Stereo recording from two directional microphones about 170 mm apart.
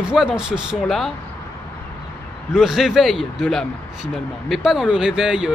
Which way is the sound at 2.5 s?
Centre (ahead or behind).